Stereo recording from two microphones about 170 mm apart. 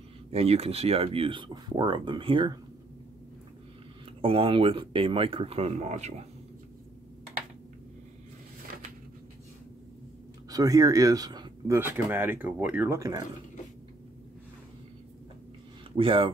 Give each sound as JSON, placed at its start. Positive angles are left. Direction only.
{"t": 0.3, "sound": "speech", "side_deg": -35}
{"t": 4.2, "sound": "speech", "side_deg": -30}
{"t": 10.5, "sound": "speech", "side_deg": -20}
{"t": 16.0, "sound": "speech", "side_deg": -30}